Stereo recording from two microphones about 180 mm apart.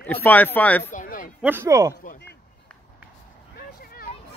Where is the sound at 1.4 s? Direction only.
15° right (ahead or behind).